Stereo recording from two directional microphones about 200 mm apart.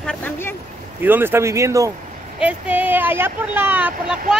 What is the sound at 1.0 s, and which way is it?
Speech, 10° right (ahead or behind).